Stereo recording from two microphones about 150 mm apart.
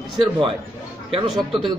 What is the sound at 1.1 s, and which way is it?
Speech, 30° right (ahead or behind).